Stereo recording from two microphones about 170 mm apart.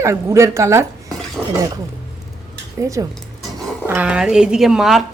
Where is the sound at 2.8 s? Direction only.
20° right (ahead or behind).